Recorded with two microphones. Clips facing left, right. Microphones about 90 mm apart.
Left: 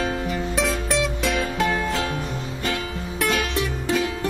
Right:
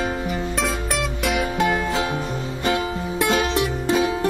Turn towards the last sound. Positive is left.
turn(degrees=-20)  # may be behind; listen again after turning